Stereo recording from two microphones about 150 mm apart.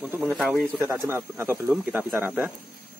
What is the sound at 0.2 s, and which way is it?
Rub, 5° right (ahead or behind).